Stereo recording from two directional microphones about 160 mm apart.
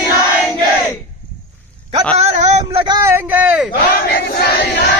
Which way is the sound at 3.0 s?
10° right (ahead or behind).